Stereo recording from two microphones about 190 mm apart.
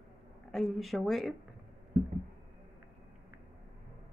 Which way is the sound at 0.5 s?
Centre (ahead or behind).